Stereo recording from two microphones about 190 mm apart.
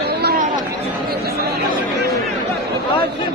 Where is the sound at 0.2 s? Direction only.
55° right (ahead or behind).